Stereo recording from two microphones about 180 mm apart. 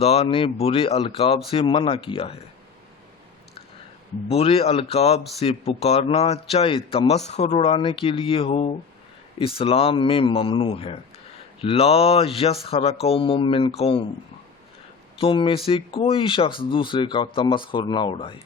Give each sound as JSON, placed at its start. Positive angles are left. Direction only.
{"t": 0.0, "sound": "a man's voice", "side_deg": 35}
{"t": 4.3, "sound": "a man's voice", "side_deg": 35}
{"t": 15.2, "sound": "speech", "side_deg": 30}